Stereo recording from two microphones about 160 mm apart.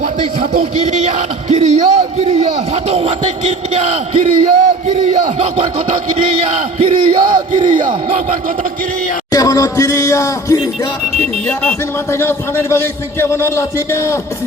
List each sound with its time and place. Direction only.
0.6 s speech: 40° right (ahead or behind)
5.0 s crowd: 35° right (ahead or behind)
9.3 s speech: 20° left (ahead or behind)
11.4 s a man's voice: 10° left (ahead or behind)